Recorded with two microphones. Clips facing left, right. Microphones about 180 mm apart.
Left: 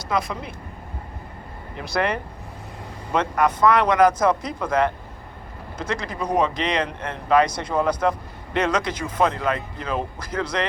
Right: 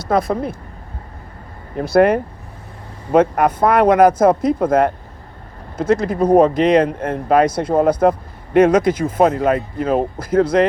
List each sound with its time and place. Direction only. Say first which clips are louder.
0.0 s speech: right 8 dB; 55° right (ahead or behind)
1.7 s speech: right 11 dB; 50° right (ahead or behind)